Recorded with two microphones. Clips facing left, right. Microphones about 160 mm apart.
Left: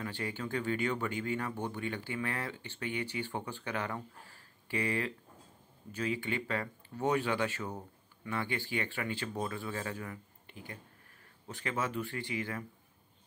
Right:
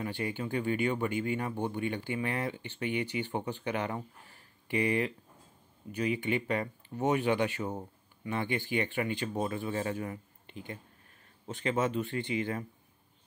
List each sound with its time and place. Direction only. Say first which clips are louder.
0.0 s speech: right 4 dB; 15° right (ahead or behind)